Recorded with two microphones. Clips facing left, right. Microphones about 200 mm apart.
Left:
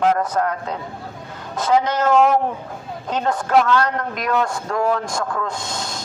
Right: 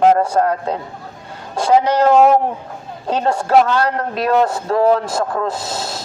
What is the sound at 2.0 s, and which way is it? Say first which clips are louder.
Speech: right 4 dB; 30° right (ahead or behind).